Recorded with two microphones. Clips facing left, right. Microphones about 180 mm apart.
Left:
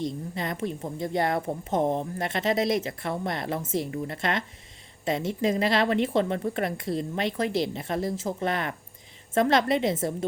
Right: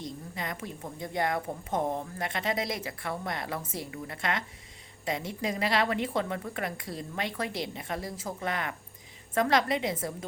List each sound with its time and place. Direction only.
0.0 s a woman's voice: 25° left (ahead or behind)